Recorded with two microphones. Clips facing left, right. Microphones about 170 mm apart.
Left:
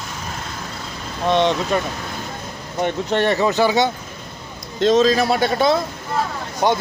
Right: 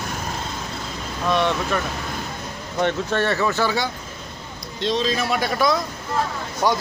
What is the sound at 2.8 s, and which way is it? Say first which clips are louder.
Speech: left 2 dB; 20° left (ahead or behind).